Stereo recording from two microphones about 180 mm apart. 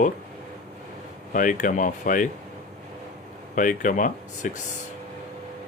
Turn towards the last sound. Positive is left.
turn(degrees=45)  # may be behind; listen again after turning